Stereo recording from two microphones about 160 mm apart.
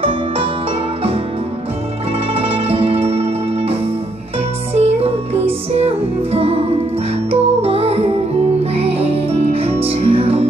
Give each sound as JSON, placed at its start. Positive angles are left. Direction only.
{"t": 2.3, "sound": "music", "side_deg": -35}
{"t": 4.7, "sound": "music", "side_deg": -40}